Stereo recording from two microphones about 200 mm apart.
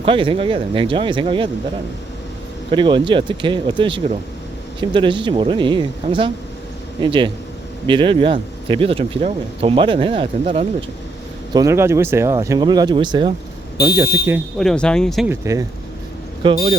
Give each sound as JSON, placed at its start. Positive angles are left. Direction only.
{"t": 0.0, "sound": "speech", "side_deg": -25}
{"t": 2.6, "sound": "speech", "side_deg": -25}
{"t": 11.5, "sound": "speech", "side_deg": -15}
{"t": 13.9, "sound": "speech", "side_deg": -10}
{"t": 14.6, "sound": "speech", "side_deg": 5}
{"t": 15.3, "sound": "speech", "side_deg": -15}